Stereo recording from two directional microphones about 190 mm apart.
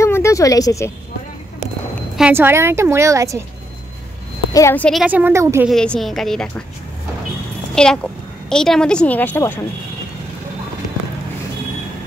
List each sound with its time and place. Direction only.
0.0 s a sound: 15° left (ahead or behind)
2.1 s speech: 10° right (ahead or behind)
4.6 s a woman's voice: 10° left (ahead or behind)
5.0 s speech: 10° right (ahead or behind)
5.7 s a woman's voice: centre (ahead or behind)
7.7 s a woman's voice: 5° left (ahead or behind)